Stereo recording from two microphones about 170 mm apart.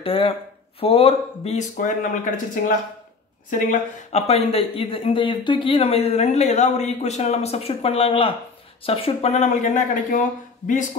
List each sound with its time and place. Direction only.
0.0 s speech: 35° left (ahead or behind); by 2.4 s 50° left (ahead or behind)
3.4 s speech: 50° left (ahead or behind)